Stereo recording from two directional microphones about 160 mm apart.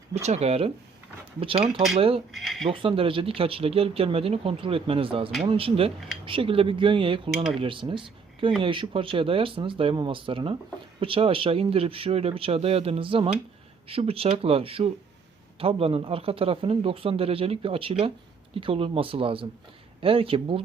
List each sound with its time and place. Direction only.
0.1 s speech: 45° right (ahead or behind)
2.3 s speech: centre (ahead or behind)
2.6 s speech: 35° right (ahead or behind)